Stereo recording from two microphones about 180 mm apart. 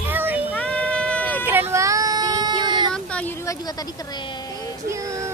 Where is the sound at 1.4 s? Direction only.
10° right (ahead or behind).